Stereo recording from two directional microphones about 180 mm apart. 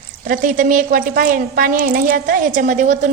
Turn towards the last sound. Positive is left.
turn(degrees=-45)  # may be behind; listen again after turning